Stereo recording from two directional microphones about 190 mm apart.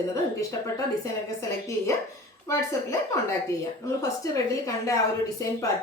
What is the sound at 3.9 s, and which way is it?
Speech, 15° left (ahead or behind).